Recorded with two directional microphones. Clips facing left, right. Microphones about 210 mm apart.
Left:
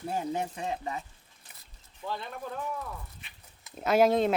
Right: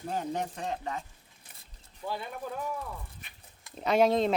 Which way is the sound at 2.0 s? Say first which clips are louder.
Right 1 dB; 10° right (ahead or behind).